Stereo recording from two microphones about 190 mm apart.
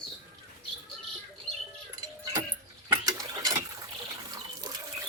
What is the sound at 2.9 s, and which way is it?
Ratchet, 20° right (ahead or behind).